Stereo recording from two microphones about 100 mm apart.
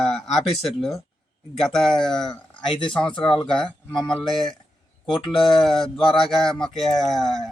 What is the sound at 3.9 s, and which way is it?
Speech, 50° left (ahead or behind).